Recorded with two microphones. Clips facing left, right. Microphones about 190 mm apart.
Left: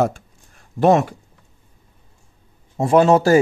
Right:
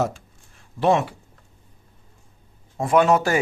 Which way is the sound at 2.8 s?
30° left (ahead or behind).